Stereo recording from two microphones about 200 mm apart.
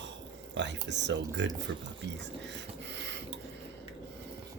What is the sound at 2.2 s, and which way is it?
Rub, 60° right (ahead or behind).